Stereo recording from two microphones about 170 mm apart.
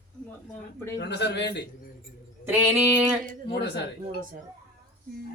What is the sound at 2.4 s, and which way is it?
Speech, 15° right (ahead or behind).